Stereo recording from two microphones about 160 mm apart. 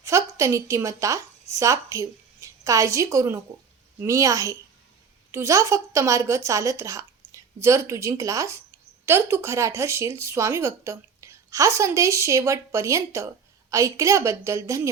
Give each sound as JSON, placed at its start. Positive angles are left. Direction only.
{"t": 0.0, "sound": "a woman's voice", "side_deg": -20}